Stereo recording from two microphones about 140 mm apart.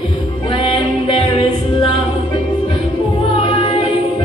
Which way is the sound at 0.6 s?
40° left (ahead or behind).